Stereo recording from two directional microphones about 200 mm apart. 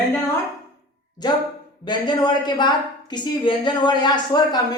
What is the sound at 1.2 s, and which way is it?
A woman's voice, 20° left (ahead or behind).